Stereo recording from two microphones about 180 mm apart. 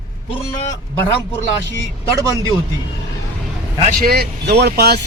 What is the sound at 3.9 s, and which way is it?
Speech, 55° right (ahead or behind).